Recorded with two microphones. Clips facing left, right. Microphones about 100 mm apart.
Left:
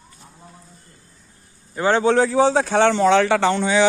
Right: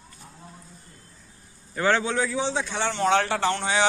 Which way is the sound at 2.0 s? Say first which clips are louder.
Left 10 dB; 35° left (ahead or behind).